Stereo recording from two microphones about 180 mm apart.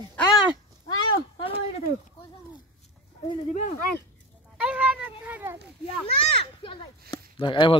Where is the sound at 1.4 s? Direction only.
30° left (ahead or behind).